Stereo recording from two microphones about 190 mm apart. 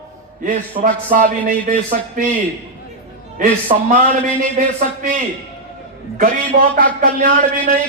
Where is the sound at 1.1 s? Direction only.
45° right (ahead or behind).